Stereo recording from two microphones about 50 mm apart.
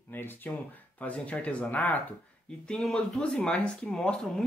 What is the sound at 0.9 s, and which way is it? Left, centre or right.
Speech, left.